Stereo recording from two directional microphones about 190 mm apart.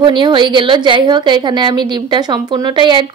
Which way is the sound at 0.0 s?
25° right (ahead or behind).